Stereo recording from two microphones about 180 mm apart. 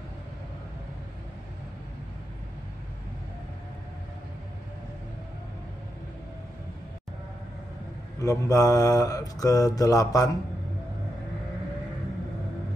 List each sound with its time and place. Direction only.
8.2 s mantra: 20° left (ahead or behind)